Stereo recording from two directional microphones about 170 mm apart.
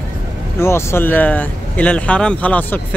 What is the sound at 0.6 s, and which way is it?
Speech, 15° left (ahead or behind).